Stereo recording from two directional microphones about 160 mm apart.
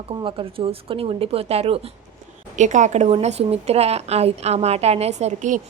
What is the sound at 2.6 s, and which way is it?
A woman's voice, 50° right (ahead or behind).